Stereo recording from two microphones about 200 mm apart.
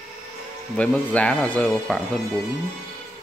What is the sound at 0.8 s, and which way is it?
Speech, 5° left (ahead or behind).